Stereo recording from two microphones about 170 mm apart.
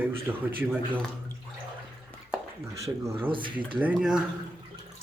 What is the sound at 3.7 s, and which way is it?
Speech, 5° right (ahead or behind).